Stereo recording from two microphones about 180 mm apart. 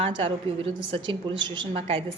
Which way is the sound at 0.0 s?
30° right (ahead or behind).